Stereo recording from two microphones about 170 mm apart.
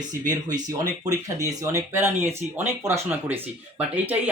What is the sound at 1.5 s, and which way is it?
Speech, 20° right (ahead or behind).